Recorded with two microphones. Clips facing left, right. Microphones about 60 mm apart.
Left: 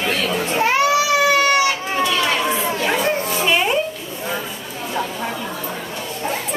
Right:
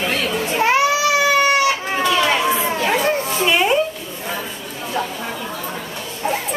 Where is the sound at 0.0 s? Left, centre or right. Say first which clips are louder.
Even; centre.